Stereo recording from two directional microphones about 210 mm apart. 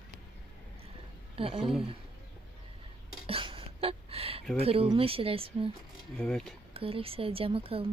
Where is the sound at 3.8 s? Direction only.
30° right (ahead or behind).